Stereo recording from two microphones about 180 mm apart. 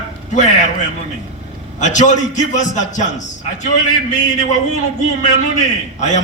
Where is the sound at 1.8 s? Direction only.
40° left (ahead or behind).